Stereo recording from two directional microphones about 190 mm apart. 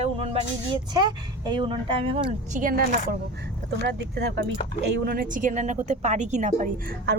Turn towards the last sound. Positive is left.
turn(degrees=-40)  # may be behind; listen again after turning